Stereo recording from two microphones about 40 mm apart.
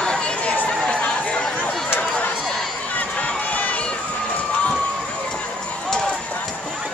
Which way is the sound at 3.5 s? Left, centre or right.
Left.